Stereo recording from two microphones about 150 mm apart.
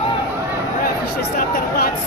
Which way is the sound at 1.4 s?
90° left.